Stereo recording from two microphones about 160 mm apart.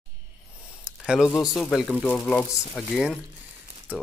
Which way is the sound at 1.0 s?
5° right (ahead or behind).